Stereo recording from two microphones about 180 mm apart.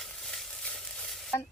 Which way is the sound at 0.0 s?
Centre (ahead or behind).